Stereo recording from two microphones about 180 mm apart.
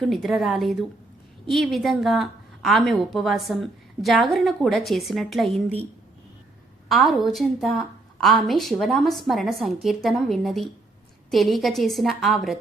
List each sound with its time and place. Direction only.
0.0 s a woman's voice: centre (ahead or behind)
6.8 s a woman's voice: centre (ahead or behind)